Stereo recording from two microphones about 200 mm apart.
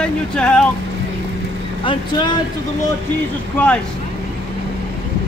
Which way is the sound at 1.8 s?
25° left (ahead or behind).